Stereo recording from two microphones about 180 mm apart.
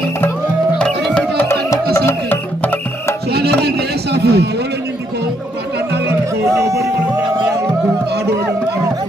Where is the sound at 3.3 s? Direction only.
65° right (ahead or behind).